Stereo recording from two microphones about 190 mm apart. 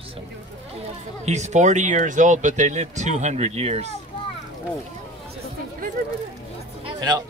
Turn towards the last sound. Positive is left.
turn(degrees=-20)  # may be behind; listen again after turning